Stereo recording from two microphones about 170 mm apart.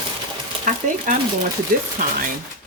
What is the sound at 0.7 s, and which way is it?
Speech, 45° right (ahead or behind).